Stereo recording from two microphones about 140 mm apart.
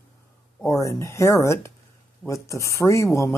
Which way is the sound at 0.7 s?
20° left (ahead or behind).